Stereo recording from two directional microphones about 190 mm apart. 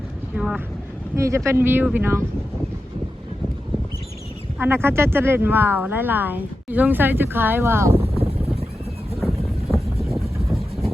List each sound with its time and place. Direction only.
0.3 s speech: 5° right (ahead or behind)
1.1 s speech: 15° right (ahead or behind)
4.5 s speech: 10° right (ahead or behind)
7.9 s boat: 30° right (ahead or behind)
9.2 s a sound: centre (ahead or behind)
10.5 s vehicle: centre (ahead or behind)